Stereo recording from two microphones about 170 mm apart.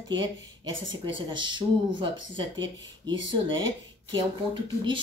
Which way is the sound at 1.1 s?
30° right (ahead or behind).